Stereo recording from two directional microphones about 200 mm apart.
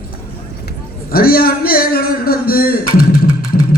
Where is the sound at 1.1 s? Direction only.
50° left (ahead or behind).